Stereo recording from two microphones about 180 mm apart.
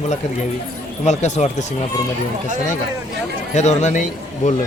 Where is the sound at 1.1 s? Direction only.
40° left (ahead or behind).